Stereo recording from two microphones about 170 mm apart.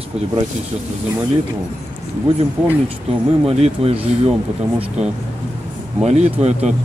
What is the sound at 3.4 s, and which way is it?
Speech, 35° right (ahead or behind).